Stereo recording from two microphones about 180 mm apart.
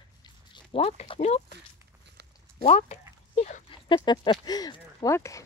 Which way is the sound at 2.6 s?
35° left (ahead or behind).